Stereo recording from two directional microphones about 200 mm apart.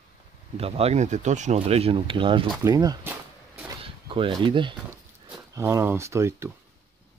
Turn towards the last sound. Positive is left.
turn(degrees=-15)  # may be behind; listen again after turning